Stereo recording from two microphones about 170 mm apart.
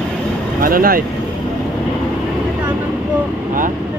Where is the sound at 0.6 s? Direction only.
60° right (ahead or behind).